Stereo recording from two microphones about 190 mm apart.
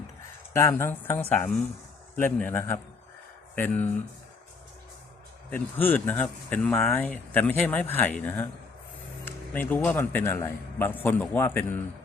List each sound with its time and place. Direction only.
0.5 s speech: 15° left (ahead or behind)
5.5 s speech: 10° left (ahead or behind)